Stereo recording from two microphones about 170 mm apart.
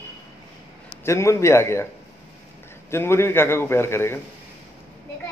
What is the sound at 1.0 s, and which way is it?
Speech, 15° left (ahead or behind).